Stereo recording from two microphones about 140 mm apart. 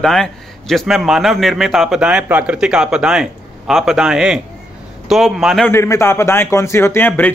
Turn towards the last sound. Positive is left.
turn(degrees=15)  # may be behind; listen again after turning